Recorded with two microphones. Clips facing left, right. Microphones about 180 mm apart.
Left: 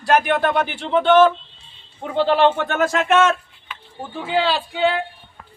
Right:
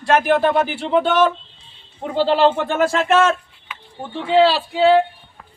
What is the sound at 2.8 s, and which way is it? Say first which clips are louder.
Speech: right 1 dB; 30° right (ahead or behind).